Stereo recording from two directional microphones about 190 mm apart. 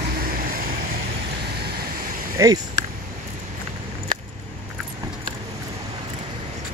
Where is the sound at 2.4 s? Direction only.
15° right (ahead or behind).